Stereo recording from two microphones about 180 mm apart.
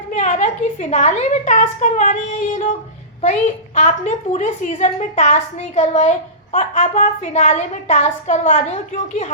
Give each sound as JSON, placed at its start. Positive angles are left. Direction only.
{"t": 0.1, "sound": "a woman's voice", "side_deg": 45}
{"t": 3.8, "sound": "a woman's voice", "side_deg": 40}